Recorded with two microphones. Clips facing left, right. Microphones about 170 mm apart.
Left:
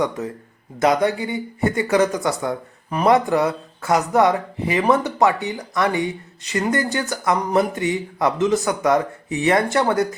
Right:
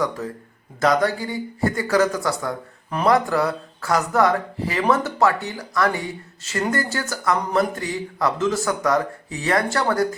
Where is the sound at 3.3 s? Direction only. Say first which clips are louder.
Left 2 dB; 20° left (ahead or behind).